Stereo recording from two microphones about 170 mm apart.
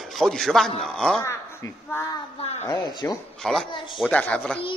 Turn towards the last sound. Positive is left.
turn(degrees=5)  # may be behind; listen again after turning